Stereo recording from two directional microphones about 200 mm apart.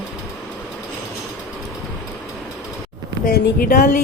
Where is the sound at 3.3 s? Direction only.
50° left (ahead or behind).